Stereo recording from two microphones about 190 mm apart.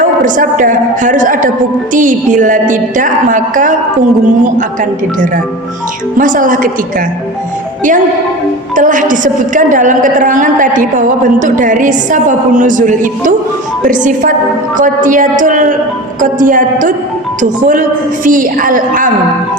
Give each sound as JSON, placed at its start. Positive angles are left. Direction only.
{"t": 0.0, "sound": "a woman's voice", "side_deg": -45}
{"t": 6.1, "sound": "a woman's voice", "side_deg": -45}
{"t": 8.7, "sound": "a woman's voice", "side_deg": -45}